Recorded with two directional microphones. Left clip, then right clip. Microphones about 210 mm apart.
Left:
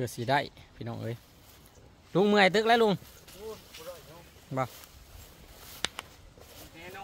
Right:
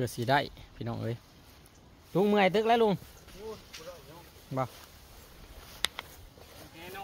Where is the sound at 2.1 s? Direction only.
15° left (ahead or behind).